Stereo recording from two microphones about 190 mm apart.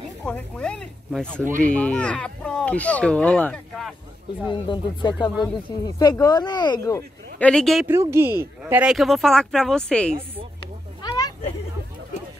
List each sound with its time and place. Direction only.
0.2 s speech: 5° left (ahead or behind)
4.5 s speech: 25° left (ahead or behind)
7.4 s speech: centre (ahead or behind)
7.8 s speech: 15° right (ahead or behind); by 10.1 s 5° left (ahead or behind)
11.0 s a sound: 20° left (ahead or behind)